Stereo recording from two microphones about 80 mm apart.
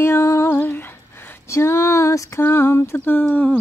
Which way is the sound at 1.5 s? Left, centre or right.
Left.